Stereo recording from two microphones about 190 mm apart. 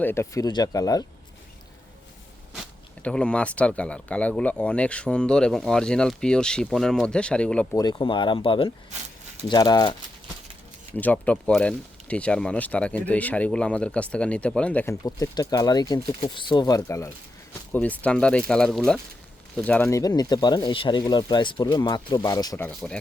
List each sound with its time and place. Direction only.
0.0 s speech: 15° left (ahead or behind)
3.0 s speech: 5° left (ahead or behind)
7.8 s speech: 25° left (ahead or behind)
10.9 s speech: 10° left (ahead or behind)
15.0 s speech: 20° left (ahead or behind)